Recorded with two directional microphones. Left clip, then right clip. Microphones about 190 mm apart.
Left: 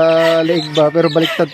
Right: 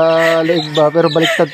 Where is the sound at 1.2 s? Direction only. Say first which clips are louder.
Right 3 dB; 15° left (ahead or behind).